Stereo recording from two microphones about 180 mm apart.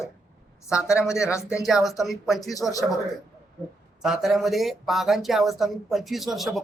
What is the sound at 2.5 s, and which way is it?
Speech, 20° left (ahead or behind).